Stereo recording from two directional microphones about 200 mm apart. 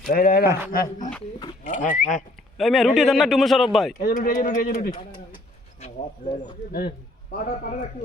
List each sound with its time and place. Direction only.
0.1 s a man's voice: 45° left (ahead or behind)
2.6 s a man's voice: centre (ahead or behind)
4.0 s a man's voice: 45° left (ahead or behind)
5.8 s speech: 35° left (ahead or behind)
6.7 s a man's voice: 50° left (ahead or behind)